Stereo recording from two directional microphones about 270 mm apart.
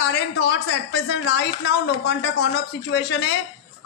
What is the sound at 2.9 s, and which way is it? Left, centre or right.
Speech, left.